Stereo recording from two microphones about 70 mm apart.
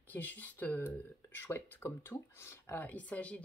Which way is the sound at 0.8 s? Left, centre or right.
Left.